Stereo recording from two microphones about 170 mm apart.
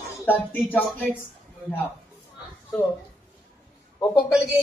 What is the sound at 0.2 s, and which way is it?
Speech, 10° left (ahead or behind).